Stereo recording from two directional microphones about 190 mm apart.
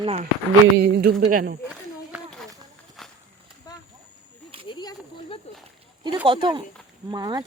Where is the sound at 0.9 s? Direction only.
60° right (ahead or behind).